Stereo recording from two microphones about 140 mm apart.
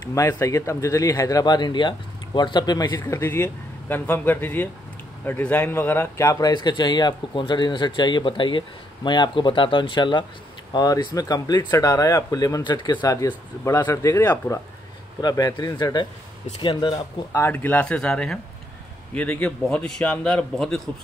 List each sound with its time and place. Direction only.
0.1 s a man's voice: 25° left (ahead or behind)
6.5 s speech: 30° left (ahead or behind)
15.2 s speech: 30° left (ahead or behind)
17.3 s a man's voice: 15° left (ahead or behind)